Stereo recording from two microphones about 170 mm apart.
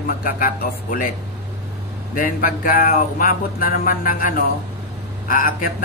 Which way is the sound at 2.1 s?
55° left (ahead or behind).